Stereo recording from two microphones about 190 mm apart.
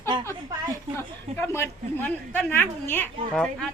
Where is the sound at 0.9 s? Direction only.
15° left (ahead or behind).